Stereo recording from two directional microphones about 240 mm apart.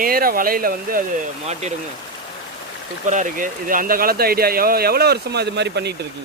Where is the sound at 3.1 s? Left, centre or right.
Right.